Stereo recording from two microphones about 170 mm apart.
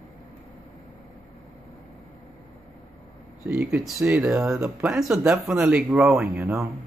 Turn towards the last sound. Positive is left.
turn(degrees=-15)  # may be behind; listen again after turning